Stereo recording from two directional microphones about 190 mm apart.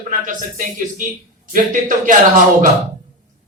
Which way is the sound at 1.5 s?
45° right (ahead or behind).